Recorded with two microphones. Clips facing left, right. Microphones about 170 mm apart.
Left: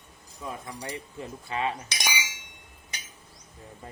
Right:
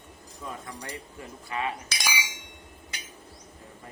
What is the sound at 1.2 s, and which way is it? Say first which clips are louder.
Speech: left 2 dB; 25° left (ahead or behind).